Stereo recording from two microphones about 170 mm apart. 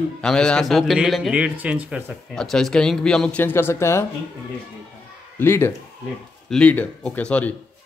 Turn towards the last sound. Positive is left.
turn(degrees=10)  # may be behind; listen again after turning